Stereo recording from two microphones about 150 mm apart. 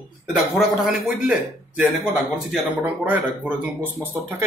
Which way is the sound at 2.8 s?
10° right (ahead or behind).